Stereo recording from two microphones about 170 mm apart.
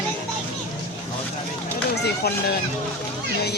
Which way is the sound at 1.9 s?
70° left (ahead or behind).